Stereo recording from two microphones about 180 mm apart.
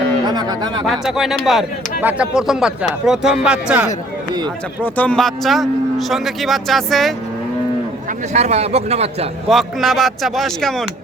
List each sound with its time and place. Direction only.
0.3 s speech: 25° right (ahead or behind)
0.9 s speech: centre (ahead or behind)
4.9 s speech: 5° left (ahead or behind)
8.3 s a man's voice: 35° right (ahead or behind)
9.5 s speech: centre (ahead or behind)